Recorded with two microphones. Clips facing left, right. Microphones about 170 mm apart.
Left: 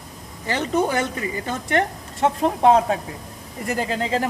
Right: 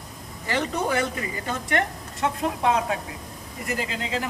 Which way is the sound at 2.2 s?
35° left (ahead or behind).